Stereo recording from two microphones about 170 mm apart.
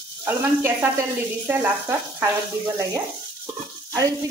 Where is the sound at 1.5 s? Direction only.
15° right (ahead or behind).